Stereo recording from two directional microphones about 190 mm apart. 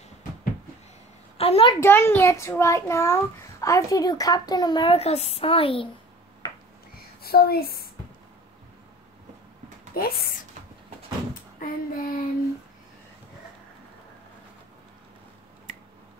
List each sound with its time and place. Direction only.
1.4 s speech: 30° left (ahead or behind)
1.8 s a child's voice: 10° left (ahead or behind); by 5.9 s 30° left (ahead or behind)
7.2 s child singing: 55° left (ahead or behind)
9.9 s speech: 50° left (ahead or behind)
11.6 s child singing: 45° left (ahead or behind)